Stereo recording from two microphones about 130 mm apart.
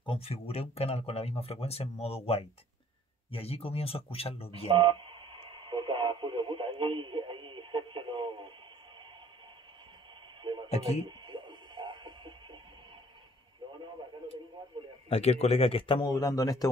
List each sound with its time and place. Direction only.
0.0 s speech: 45° left (ahead or behind)
4.6 s speech: 40° right (ahead or behind)
5.7 s radio: 40° right (ahead or behind)
10.4 s a sound: 35° right (ahead or behind)
11.1 s radio: 35° right (ahead or behind)
15.0 s speech: 55° left (ahead or behind)
16.1 s speech: 30° left (ahead or behind)